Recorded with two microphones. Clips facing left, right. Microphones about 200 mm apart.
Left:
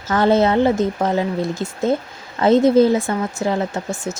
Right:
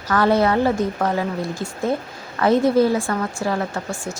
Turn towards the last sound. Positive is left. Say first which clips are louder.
# left 3 dB
turn(degrees=20)  # may be behind; listen again after turning